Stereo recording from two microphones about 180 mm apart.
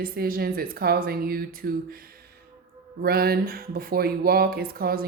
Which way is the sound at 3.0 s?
60° right (ahead or behind).